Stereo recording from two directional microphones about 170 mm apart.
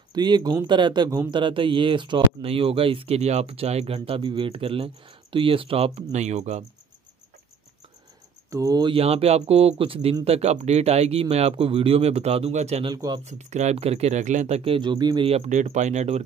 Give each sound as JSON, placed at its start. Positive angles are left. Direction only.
{"t": 0.1, "sound": "speech", "side_deg": -25}
{"t": 8.5, "sound": "speech", "side_deg": -20}
{"t": 12.9, "sound": "speech", "side_deg": -20}
{"t": 13.2, "sound": "speech", "side_deg": -40}